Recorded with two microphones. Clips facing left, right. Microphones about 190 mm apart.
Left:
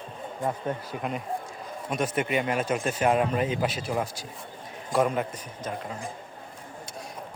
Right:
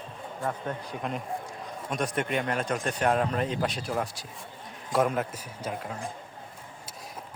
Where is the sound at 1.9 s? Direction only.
Centre (ahead or behind).